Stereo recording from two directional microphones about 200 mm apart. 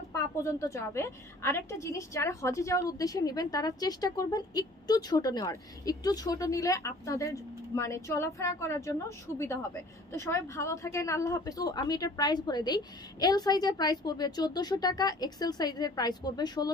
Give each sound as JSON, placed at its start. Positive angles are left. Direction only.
{"t": 0.1, "sound": "a woman's voice", "side_deg": 15}
{"t": 10.1, "sound": "a woman's voice", "side_deg": 15}